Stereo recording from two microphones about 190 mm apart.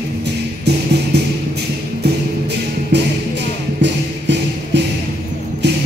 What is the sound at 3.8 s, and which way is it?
Music, 65° right (ahead or behind).